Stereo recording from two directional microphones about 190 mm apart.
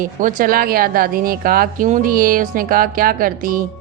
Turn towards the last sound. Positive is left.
turn(degrees=-45)  # may be behind; listen again after turning